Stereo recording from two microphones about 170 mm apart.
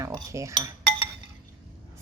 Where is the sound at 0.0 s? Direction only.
20° right (ahead or behind).